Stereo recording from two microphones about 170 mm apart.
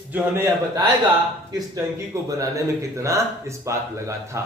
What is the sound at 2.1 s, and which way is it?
Speech, 20° right (ahead or behind).